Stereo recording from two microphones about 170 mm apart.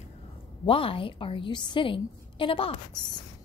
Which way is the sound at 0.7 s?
30° left (ahead or behind).